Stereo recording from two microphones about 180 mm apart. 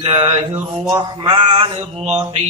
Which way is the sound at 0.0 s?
25° right (ahead or behind).